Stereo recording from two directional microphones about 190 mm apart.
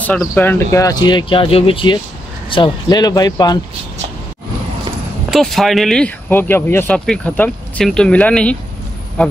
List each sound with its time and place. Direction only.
0.0 s speech: 10° left (ahead or behind)
5.3 s speech: centre (ahead or behind)